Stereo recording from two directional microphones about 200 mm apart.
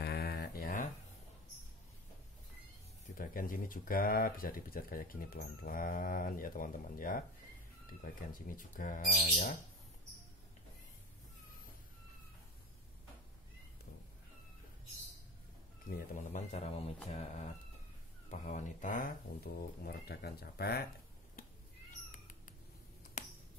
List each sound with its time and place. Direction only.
0.0 s a sound: 50° left (ahead or behind)
3.2 s speech: 45° left (ahead or behind)
16.0 s speech: 35° left (ahead or behind)
18.4 s speech: 40° left (ahead or behind)